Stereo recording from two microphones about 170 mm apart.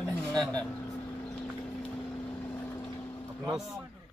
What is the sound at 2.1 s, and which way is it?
Vehicle, 10° left (ahead or behind).